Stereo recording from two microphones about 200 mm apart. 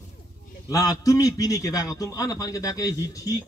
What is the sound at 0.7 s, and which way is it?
A man's voice, 15° left (ahead or behind).